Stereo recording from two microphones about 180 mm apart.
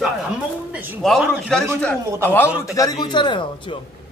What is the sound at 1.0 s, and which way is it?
Speech, centre (ahead or behind).